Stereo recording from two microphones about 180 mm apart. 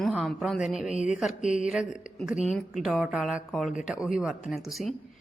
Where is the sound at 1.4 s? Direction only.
40° left (ahead or behind).